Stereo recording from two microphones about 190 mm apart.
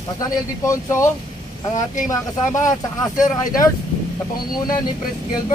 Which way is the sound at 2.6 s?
40° left (ahead or behind).